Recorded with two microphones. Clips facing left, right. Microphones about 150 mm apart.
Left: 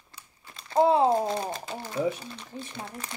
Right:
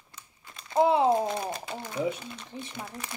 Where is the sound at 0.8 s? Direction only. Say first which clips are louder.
Left 1 dB; 30° left (ahead or behind).